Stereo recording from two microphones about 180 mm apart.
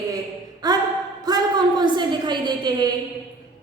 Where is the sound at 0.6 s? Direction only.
20° right (ahead or behind).